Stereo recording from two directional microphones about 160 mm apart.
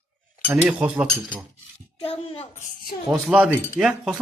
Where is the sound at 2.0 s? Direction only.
35° left (ahead or behind).